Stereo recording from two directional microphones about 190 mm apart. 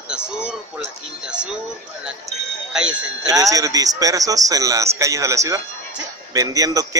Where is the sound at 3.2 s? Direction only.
20° right (ahead or behind).